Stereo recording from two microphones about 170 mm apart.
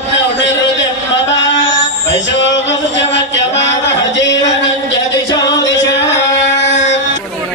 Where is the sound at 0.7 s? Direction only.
90° left.